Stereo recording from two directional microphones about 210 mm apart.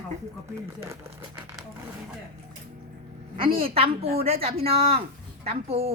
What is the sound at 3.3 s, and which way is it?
A woman's voice, 25° right (ahead or behind).